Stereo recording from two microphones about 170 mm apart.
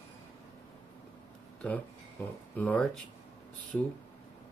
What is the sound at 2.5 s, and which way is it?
Speech, 10° left (ahead or behind).